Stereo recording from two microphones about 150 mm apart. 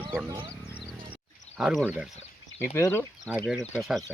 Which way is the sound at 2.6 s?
15° left (ahead or behind).